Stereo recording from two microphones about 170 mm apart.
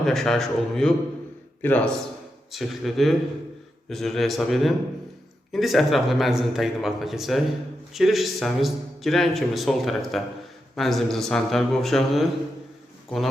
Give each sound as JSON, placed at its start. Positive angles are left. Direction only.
{"t": 0.0, "sound": "a man's voice", "side_deg": 0}